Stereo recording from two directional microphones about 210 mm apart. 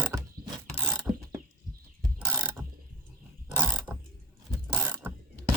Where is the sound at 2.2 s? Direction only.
15° right (ahead or behind).